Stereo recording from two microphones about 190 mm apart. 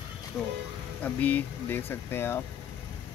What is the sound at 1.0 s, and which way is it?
Speech, 10° left (ahead or behind).